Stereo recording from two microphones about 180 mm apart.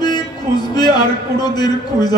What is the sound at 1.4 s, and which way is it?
Speech, 20° left (ahead or behind).